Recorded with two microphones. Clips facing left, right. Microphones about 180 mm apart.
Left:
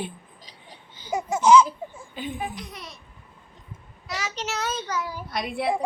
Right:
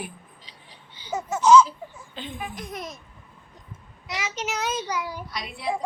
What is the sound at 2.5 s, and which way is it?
Speech, 50° right (ahead or behind).